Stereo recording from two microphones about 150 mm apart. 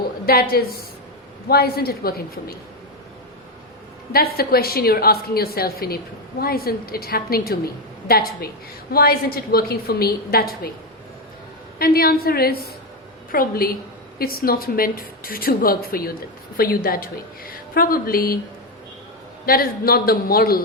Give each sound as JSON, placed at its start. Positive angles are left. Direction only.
{"t": 0.3, "sound": "a woman's voice", "side_deg": 90}
{"t": 4.1, "sound": "a woman's voice", "side_deg": 90}
{"t": 11.8, "sound": "a woman's voice", "side_deg": 90}
{"t": 13.3, "sound": "a woman's voice", "side_deg": 75}
{"t": 19.5, "sound": "a woman's voice", "side_deg": 80}